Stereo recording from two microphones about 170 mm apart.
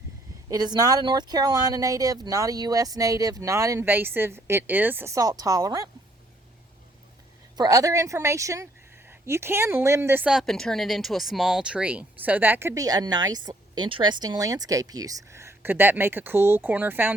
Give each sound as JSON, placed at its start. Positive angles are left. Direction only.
{"t": 0.5, "sound": "speech", "side_deg": -25}
{"t": 7.5, "sound": "speech", "side_deg": -20}